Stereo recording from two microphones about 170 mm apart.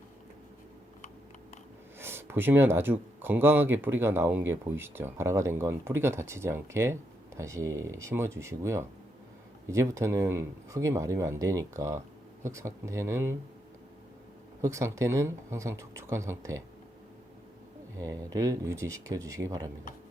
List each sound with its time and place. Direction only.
2.0 s speech: 15° right (ahead or behind)
14.6 s speech: 20° right (ahead or behind)
18.0 s speech: 20° right (ahead or behind)